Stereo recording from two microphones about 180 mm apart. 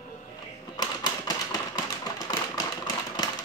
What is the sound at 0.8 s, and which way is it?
Typewriter, 20° left (ahead or behind).